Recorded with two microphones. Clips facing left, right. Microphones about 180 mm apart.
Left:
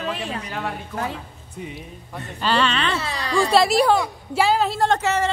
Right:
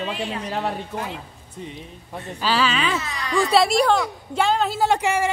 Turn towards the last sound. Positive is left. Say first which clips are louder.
# even
turn(degrees=-10)  # may be behind; listen again after turning